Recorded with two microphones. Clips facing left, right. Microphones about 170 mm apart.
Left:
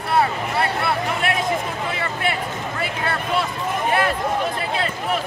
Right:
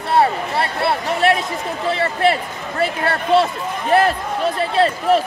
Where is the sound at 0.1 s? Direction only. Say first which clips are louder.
Right 4 dB; 30° right (ahead or behind).